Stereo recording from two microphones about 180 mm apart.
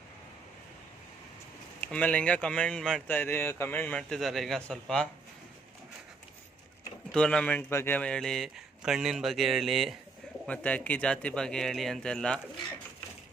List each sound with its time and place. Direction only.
1.8 s speech: 10° left (ahead or behind)
7.1 s a man's voice: 5° left (ahead or behind)